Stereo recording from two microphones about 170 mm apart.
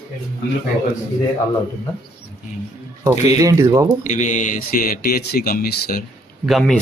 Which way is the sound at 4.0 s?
45° left (ahead or behind).